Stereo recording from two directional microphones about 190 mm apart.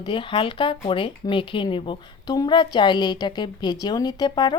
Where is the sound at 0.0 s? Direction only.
25° left (ahead or behind).